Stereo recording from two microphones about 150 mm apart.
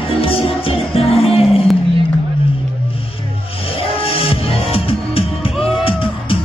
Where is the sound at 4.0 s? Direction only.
40° left (ahead or behind).